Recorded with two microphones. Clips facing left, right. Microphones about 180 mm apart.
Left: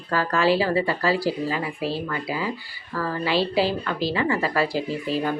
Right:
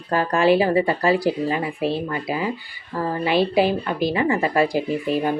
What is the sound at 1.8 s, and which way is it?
Speech, 60° right (ahead or behind).